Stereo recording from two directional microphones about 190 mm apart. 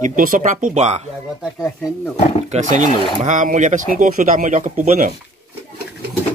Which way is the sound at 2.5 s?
40° right (ahead or behind).